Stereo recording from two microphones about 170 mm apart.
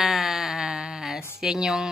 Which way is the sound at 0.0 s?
Centre (ahead or behind).